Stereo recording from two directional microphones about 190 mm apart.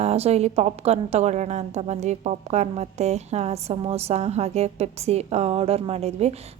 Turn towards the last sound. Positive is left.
turn(degrees=-35)  # may be behind; listen again after turning